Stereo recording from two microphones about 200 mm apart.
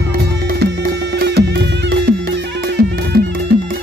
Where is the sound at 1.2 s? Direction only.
55° right (ahead or behind).